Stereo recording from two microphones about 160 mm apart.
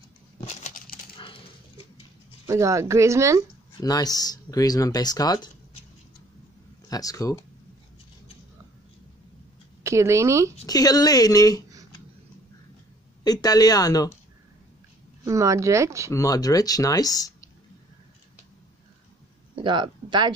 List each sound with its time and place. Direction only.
0.5 s a sound: 45° left (ahead or behind)
1.1 s dog: 35° left (ahead or behind)
2.4 s speech: 20° right (ahead or behind)
3.8 s speech: 25° left (ahead or behind)
6.9 s speech: 20° left (ahead or behind)
9.8 s speech: 20° right (ahead or behind)
10.7 s speech: 25° left (ahead or behind)
13.2 s speech: 25° left (ahead or behind)
15.2 s speech: 20° right (ahead or behind)
16.1 s speech: 20° left (ahead or behind)
19.5 s speech: 30° right (ahead or behind)